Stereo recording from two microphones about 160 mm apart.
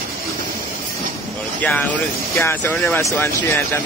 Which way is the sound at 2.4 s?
15° left (ahead or behind).